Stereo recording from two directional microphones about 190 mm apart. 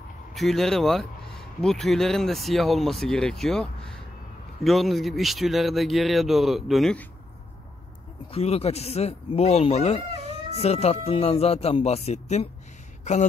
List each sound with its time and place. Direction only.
0.3 s speech: centre (ahead or behind)
8.3 s speech: 30° left (ahead or behind)
13.0 s a sound: 40° left (ahead or behind)